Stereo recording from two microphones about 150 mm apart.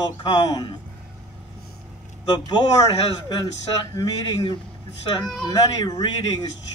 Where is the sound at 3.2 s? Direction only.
30° left (ahead or behind).